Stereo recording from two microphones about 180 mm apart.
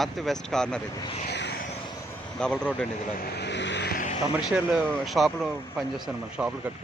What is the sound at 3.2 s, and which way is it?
Vehicle, 65° left (ahead or behind).